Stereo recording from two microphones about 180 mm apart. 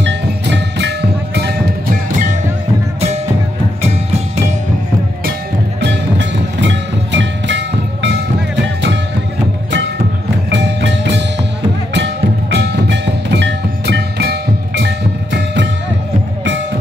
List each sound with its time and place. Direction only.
0.0 s music: 75° right (ahead or behind)
5.8 s music: 75° right (ahead or behind)
10.5 s music: 75° right (ahead or behind)
15.3 s music: 80° right